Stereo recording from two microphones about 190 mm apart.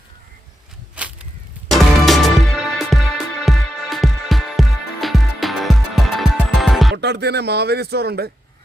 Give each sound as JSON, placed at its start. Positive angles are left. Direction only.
{"t": 1.0, "sound": "a sound", "side_deg": -5}
{"t": 1.7, "sound": "music", "side_deg": 0}
{"t": 6.9, "sound": "speech", "side_deg": -60}